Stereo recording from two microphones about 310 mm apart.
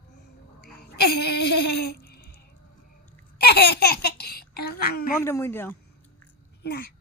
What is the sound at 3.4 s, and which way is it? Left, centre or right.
Speech, left.